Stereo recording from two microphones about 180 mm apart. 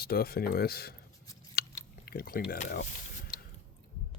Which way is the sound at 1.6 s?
60° left (ahead or behind).